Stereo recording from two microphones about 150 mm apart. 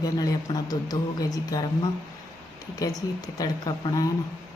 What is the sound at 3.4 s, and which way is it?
Speech, 25° left (ahead or behind).